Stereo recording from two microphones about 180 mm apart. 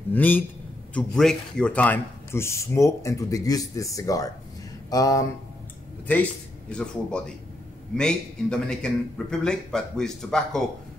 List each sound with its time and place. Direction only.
0.1 s speech: 10° left (ahead or behind)
6.7 s a man's voice: 5° left (ahead or behind)